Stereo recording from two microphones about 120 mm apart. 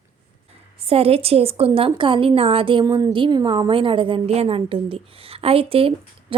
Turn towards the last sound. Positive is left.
turn(degrees=-50)  # may be behind; listen again after turning